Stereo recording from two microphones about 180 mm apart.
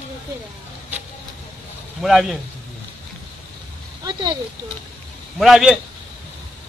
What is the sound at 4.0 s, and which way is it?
Speech, 25° right (ahead or behind).